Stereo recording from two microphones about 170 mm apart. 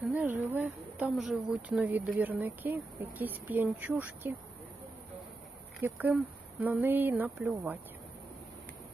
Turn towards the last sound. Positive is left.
turn(degrees=-10)  # may be behind; listen again after turning